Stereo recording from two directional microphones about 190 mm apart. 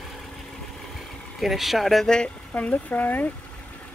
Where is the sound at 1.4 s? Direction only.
Centre (ahead or behind).